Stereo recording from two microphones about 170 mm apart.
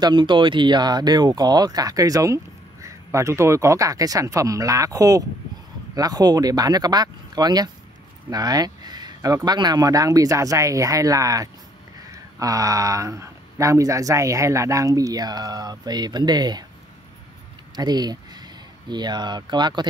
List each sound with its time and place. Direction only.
0.0 s speech: 25° right (ahead or behind)
17.7 s speech: 25° right (ahead or behind)